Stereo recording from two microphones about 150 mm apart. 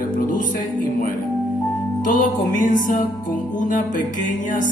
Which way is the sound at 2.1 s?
60° left (ahead or behind).